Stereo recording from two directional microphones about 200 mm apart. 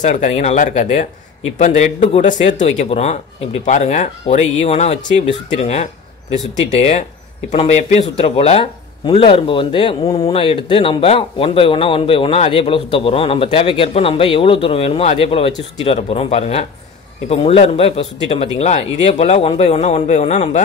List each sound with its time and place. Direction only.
0.0 s speech: 35° left (ahead or behind)